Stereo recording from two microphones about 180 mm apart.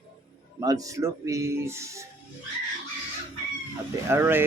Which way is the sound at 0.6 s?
20° right (ahead or behind).